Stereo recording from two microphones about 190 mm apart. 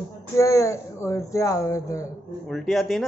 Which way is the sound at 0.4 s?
15° left (ahead or behind).